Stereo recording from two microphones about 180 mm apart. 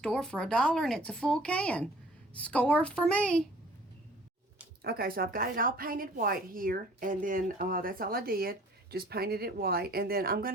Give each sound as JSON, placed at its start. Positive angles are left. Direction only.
{"t": 0.0, "sound": "a child's voice", "side_deg": 5}
{"t": 4.8, "sound": "a woman's voice", "side_deg": -55}